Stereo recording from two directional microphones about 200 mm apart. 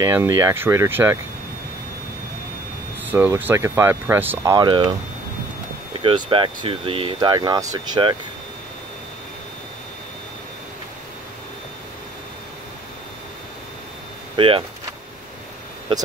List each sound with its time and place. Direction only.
0.0 s speech: 15° right (ahead or behind)
3.0 s speech: 10° right (ahead or behind)
5.9 s speech: 25° right (ahead or behind)
14.3 s speech: 25° right (ahead or behind)